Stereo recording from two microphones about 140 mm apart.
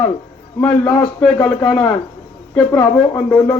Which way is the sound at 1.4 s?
5° left (ahead or behind).